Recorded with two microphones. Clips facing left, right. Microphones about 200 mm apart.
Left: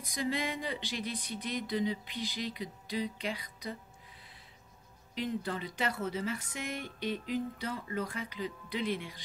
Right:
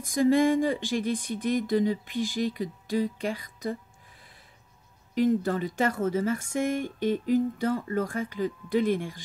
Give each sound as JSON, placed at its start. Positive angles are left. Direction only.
{"t": 0.0, "sound": "speech", "side_deg": -45}
{"t": 5.1, "sound": "speech", "side_deg": -45}